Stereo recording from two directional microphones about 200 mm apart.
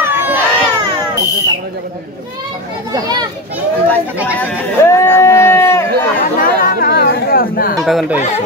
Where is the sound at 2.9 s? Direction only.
20° right (ahead or behind).